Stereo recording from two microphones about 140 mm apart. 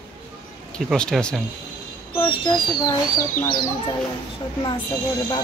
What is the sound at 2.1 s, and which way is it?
Speech, 40° left (ahead or behind).